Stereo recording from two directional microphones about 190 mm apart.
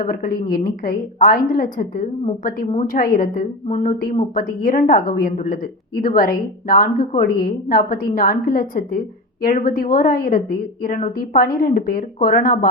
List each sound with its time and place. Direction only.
0.0 s a woman's voice: 50° left (ahead or behind)